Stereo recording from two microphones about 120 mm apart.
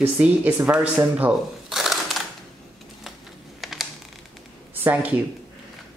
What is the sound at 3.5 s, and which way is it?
Computer keyboard, centre (ahead or behind).